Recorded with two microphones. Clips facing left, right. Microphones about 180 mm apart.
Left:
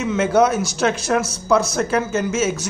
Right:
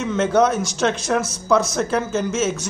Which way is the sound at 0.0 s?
5° left (ahead or behind).